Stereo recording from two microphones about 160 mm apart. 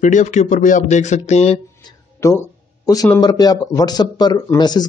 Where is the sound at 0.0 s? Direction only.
50° left (ahead or behind).